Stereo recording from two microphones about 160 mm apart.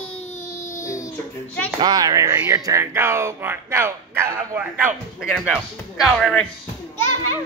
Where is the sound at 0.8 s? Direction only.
20° left (ahead or behind).